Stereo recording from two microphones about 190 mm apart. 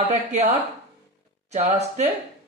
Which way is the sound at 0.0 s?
35° right (ahead or behind).